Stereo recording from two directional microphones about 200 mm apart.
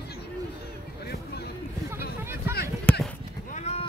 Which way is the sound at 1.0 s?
50° left (ahead or behind).